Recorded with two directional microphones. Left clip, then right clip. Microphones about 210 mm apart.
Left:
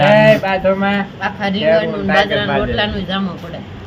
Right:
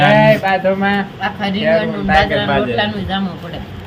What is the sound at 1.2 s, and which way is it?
Speech, 20° left (ahead or behind).